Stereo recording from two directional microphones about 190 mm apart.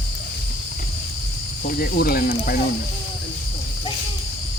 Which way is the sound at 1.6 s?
50° left (ahead or behind).